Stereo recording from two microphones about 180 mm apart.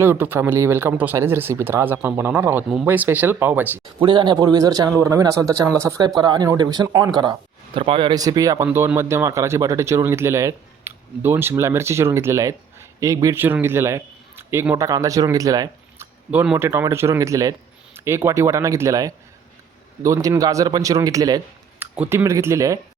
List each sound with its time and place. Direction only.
0.0 s speech: 10° right (ahead or behind)
4.0 s a man's voice: 25° right (ahead or behind)
16.3 s a man's voice: 10° right (ahead or behind)